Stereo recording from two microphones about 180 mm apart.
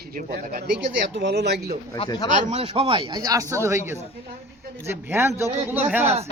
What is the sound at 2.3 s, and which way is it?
Speech, 45° right (ahead or behind).